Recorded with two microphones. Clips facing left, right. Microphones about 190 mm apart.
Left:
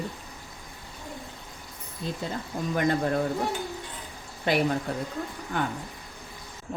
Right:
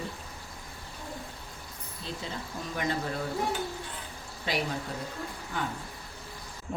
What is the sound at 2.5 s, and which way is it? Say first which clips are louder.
Speech: left 10 dB; 55° left (ahead or behind).